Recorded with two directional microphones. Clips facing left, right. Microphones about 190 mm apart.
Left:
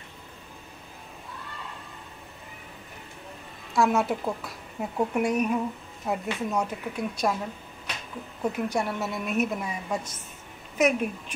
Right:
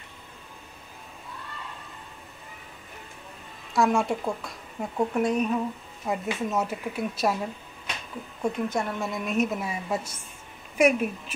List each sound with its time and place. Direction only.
3.7 s a woman's voice: centre (ahead or behind)
6.0 s a woman's voice: 5° right (ahead or behind)
8.4 s a woman's voice: 10° left (ahead or behind)